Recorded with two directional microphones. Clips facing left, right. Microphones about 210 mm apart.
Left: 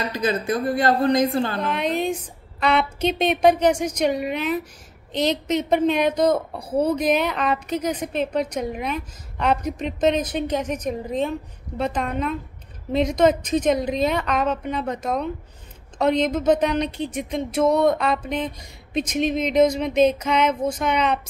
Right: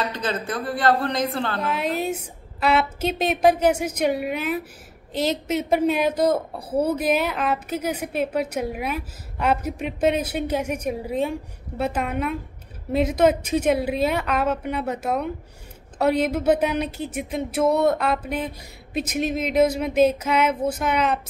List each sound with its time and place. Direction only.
0.0 s a woman's voice: 10° left (ahead or behind)
1.6 s a woman's voice: 5° right (ahead or behind)